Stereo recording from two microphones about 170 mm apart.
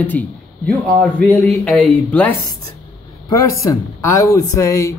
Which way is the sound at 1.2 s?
5° left (ahead or behind).